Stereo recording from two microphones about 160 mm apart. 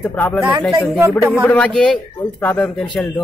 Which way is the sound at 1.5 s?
10° left (ahead or behind).